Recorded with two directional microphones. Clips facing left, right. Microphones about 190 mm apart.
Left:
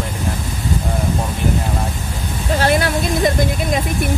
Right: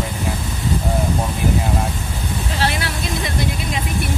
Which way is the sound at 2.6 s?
45° left (ahead or behind).